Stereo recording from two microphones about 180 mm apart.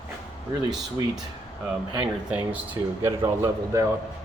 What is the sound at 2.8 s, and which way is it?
Speech, 15° right (ahead or behind).